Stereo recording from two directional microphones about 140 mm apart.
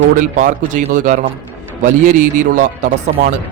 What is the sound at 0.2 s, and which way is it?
A man's voice, 65° right (ahead or behind).